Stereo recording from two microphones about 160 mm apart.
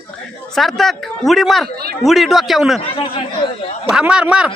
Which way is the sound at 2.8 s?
35° left (ahead or behind).